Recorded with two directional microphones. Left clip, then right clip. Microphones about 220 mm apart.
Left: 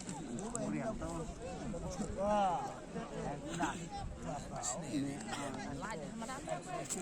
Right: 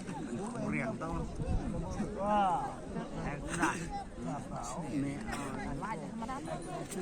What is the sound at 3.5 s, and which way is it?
Speech, 25° right (ahead or behind).